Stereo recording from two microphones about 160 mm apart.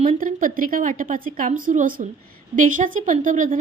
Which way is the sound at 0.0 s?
55° right (ahead or behind).